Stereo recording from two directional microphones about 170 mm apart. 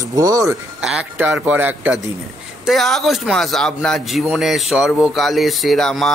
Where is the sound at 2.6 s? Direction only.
Centre (ahead or behind).